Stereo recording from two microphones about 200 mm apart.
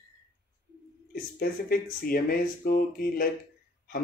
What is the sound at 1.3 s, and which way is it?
Speech, 45° left (ahead or behind).